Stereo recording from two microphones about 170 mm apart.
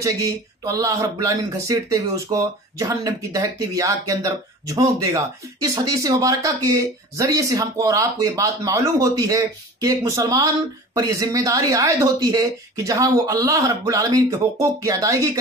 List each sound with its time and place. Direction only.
0.7 s speech: 20° right (ahead or behind)